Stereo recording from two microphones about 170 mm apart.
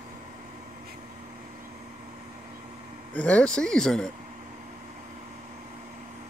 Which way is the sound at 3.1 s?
5° left (ahead or behind).